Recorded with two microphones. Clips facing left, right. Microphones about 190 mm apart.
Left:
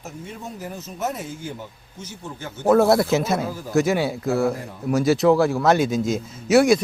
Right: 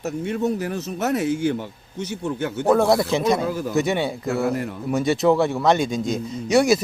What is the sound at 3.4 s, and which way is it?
Speech, 75° right (ahead or behind).